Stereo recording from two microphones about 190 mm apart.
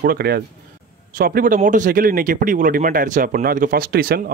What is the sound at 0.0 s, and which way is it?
Speech, 55° right (ahead or behind).